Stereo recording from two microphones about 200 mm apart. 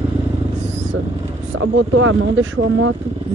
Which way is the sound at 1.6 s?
90° right.